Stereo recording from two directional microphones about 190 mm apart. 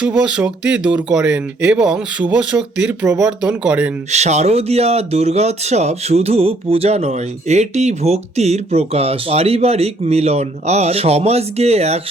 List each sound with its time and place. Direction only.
0.0 s speech: 5° right (ahead or behind)
4.1 s speech: 35° right (ahead or behind)